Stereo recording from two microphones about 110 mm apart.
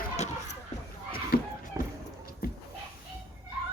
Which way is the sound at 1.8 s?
20° right (ahead or behind).